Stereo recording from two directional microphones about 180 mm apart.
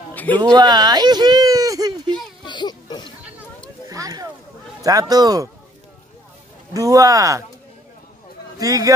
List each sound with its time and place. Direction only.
0.1 s a sound: 10° left (ahead or behind)
0.4 s speech: 25° right (ahead or behind)
2.4 s music: 25° left (ahead or behind)
3.9 s a sound: 20° right (ahead or behind)
4.8 s speech: 20° right (ahead or behind)
6.7 s speech: 20° right (ahead or behind)
8.5 s speech: 20° right (ahead or behind)